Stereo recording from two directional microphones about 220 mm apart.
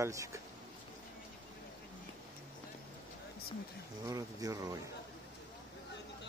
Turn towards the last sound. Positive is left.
turn(degrees=-15)  # may be behind; listen again after turning